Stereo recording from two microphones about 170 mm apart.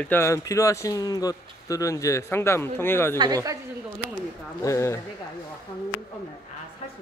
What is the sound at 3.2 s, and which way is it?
Speech, 20° right (ahead or behind).